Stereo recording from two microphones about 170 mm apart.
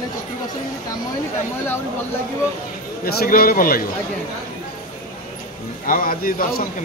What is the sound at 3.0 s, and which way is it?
Speech, 60° left (ahead or behind).